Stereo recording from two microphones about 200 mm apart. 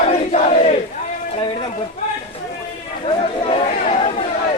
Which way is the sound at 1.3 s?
25° left (ahead or behind).